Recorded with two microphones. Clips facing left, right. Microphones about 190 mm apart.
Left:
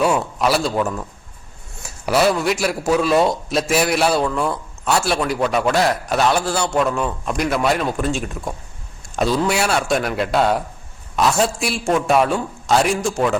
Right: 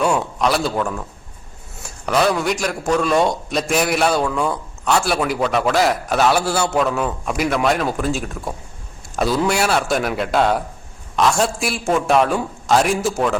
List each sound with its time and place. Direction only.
0.0 s a man's voice: 5° left (ahead or behind)
2.0 s a man's voice: 5° left (ahead or behind)